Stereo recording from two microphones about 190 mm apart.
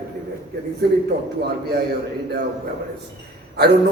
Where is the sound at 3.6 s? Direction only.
60° right (ahead or behind).